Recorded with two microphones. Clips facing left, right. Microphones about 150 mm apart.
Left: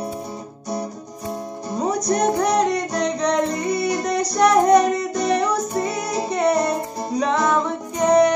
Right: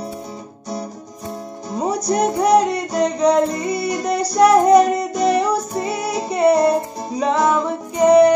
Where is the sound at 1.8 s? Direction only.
5° right (ahead or behind).